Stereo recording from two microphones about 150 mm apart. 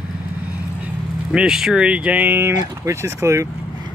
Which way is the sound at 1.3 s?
5° right (ahead or behind).